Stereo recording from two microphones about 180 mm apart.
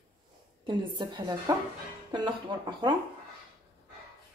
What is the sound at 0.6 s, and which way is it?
Speech, 25° right (ahead or behind).